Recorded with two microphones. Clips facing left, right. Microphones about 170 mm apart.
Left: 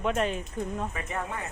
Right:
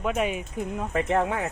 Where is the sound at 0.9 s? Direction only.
80° right.